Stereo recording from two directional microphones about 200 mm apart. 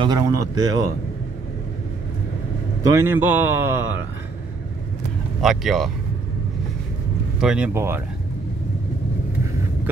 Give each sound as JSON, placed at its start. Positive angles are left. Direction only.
{"t": 0.0, "sound": "speech", "side_deg": -20}
{"t": 2.8, "sound": "a man's voice", "side_deg": -15}
{"t": 5.4, "sound": "speech", "side_deg": 0}
{"t": 7.3, "sound": "speech", "side_deg": -5}